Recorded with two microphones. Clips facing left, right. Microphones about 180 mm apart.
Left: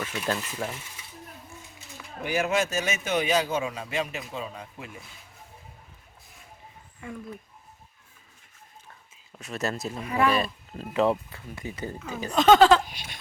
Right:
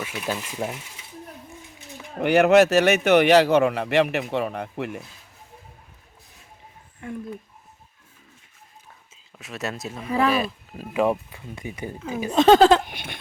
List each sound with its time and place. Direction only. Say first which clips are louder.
0.0 s speech: right 1 dB; 5° right (ahead or behind)
2.1 s speech: right 11 dB; 65° right (ahead or behind)
9.4 s speech: left 1 dB; centre (ahead or behind)
10.9 s speech: right 2 dB; 15° right (ahead or behind)
12.3 s speech: right 3 dB; 30° right (ahead or behind)
12.8 s a sound: right 4 dB; 55° right (ahead or behind)